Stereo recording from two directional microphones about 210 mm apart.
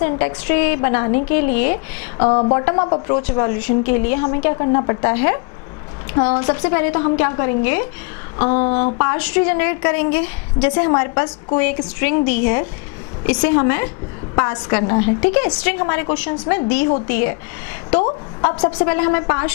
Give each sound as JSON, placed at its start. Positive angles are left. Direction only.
{"t": 0.0, "sound": "a woman's voice", "side_deg": 10}
{"t": 2.1, "sound": "a woman's voice", "side_deg": 30}
{"t": 18.0, "sound": "a woman's voice", "side_deg": 25}
{"t": 18.9, "sound": "a woman's voice", "side_deg": 10}